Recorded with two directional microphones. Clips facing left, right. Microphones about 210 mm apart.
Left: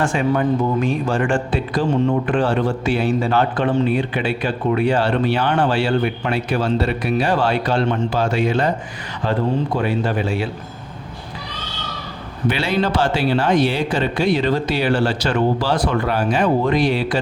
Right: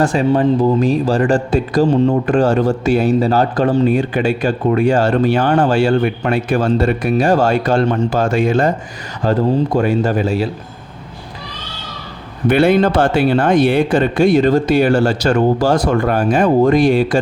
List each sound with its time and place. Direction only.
0.0 s a man's voice: 35° right (ahead or behind)
12.5 s a man's voice: 55° right (ahead or behind)